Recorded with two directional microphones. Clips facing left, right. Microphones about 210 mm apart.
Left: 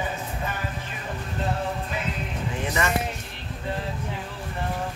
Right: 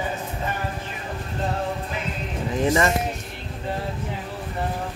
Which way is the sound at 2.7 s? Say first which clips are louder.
Right 7 dB; 30° right (ahead or behind).